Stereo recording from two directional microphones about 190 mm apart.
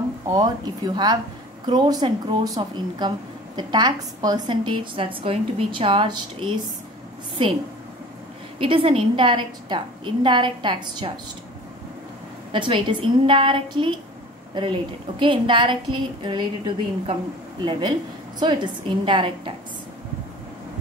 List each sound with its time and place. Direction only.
0.3 s a woman's voice: 20° right (ahead or behind)
8.5 s a woman's voice: 25° right (ahead or behind)
12.5 s a woman's voice: 25° right (ahead or behind)
15.1 s a woman's voice: 25° right (ahead or behind)